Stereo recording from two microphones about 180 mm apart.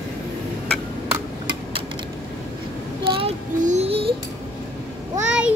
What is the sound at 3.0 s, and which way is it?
Child singing, 30° right (ahead or behind).